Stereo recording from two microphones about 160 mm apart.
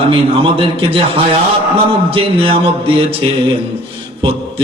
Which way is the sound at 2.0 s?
35° right (ahead or behind).